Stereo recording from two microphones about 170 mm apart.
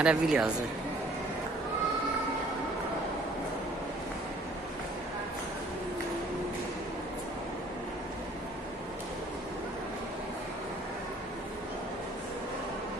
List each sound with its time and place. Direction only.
0.0 s speech: 5° right (ahead or behind)